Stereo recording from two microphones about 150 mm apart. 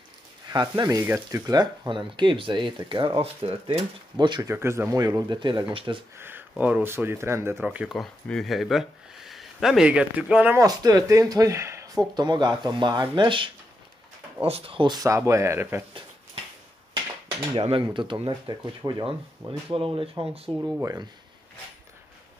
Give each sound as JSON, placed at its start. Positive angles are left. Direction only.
{"t": 0.5, "sound": "speech", "side_deg": -30}
{"t": 4.5, "sound": "speech", "side_deg": -15}
{"t": 6.1, "sound": "a sound", "side_deg": -15}
{"t": 6.6, "sound": "speech", "side_deg": -10}
{"t": 10.6, "sound": "speech", "side_deg": -25}
{"t": 17.6, "sound": "speech", "side_deg": -40}
{"t": 20.8, "sound": "speech", "side_deg": -20}